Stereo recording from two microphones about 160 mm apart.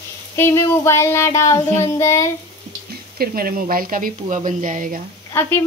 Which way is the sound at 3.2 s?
65° right (ahead or behind).